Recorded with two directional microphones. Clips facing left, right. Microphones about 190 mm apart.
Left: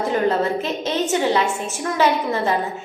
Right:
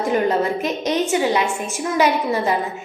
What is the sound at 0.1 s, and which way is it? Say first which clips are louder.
A woman's voice: right 1 dB; 15° right (ahead or behind).